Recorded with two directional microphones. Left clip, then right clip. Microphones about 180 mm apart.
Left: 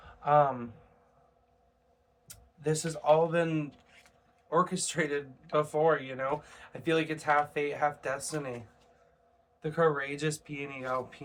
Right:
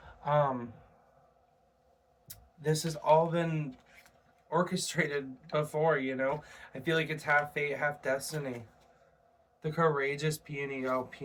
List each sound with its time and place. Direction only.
0.2 s speech: 15° left (ahead or behind)
2.2 s speech: 15° left (ahead or behind)
3.7 s a sound: 10° right (ahead or behind)
4.4 s speech: 25° left (ahead or behind)
9.6 s speech: 20° left (ahead or behind)